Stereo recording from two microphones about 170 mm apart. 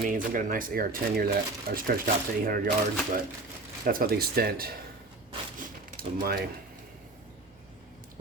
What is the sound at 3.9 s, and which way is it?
Speech, 60° right (ahead or behind).